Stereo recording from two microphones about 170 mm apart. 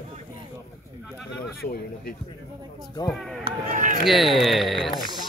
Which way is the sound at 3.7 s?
50° right (ahead or behind).